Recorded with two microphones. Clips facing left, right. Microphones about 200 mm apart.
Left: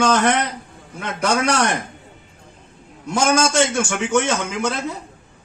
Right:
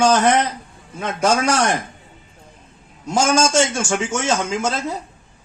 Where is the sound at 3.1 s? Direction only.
60° left (ahead or behind).